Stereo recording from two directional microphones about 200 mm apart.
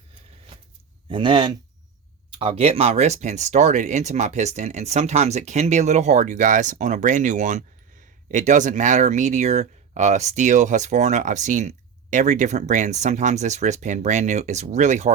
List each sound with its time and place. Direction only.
1.1 s speech: 25° right (ahead or behind)